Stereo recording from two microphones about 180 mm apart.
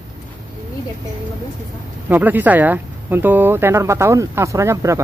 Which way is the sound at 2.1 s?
10° right (ahead or behind).